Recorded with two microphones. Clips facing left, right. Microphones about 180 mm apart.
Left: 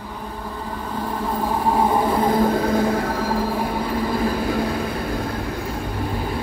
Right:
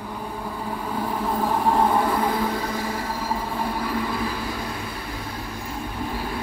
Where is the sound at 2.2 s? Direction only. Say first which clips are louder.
Left 5 dB; 35° left (ahead or behind).